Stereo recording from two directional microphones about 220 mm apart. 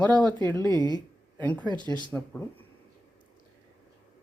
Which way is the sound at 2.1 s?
5° left (ahead or behind).